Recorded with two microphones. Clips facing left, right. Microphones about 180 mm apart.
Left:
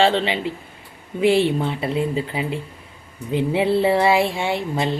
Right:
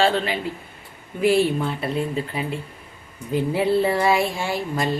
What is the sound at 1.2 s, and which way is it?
Speech, 25° left (ahead or behind).